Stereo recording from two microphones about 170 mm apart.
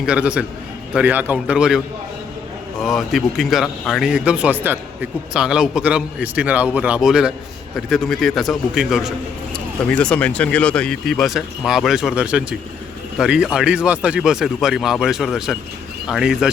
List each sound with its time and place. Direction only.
0.0 s a man's voice: 5° right (ahead or behind)
2.8 s a man's voice: centre (ahead or behind)